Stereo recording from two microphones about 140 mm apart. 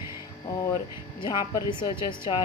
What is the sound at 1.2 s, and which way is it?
A woman's voice, 30° left (ahead or behind).